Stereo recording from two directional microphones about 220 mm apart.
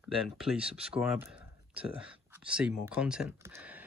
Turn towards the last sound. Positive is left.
turn(degrees=-10)  # may be behind; listen again after turning